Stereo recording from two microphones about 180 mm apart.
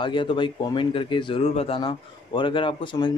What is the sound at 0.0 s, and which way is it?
Speech, 25° left (ahead or behind).